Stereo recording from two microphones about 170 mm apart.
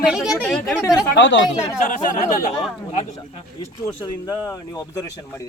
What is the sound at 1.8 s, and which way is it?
Speech, 50° left (ahead or behind).